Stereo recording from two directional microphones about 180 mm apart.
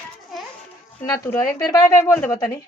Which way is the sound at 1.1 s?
15° left (ahead or behind).